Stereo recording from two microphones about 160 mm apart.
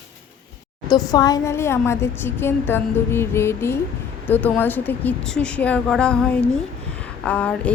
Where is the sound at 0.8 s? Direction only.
25° left (ahead or behind).